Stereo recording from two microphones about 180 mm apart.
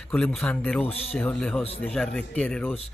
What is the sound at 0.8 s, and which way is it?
Speech, 35° left (ahead or behind).